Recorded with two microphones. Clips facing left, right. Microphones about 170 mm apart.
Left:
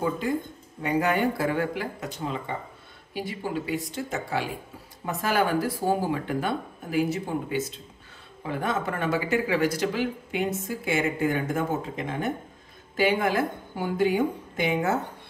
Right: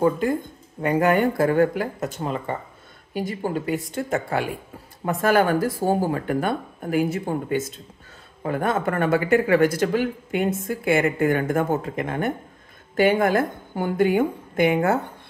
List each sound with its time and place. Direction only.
0.0 s speech: 50° right (ahead or behind)